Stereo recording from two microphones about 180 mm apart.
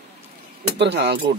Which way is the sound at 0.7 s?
70° right (ahead or behind).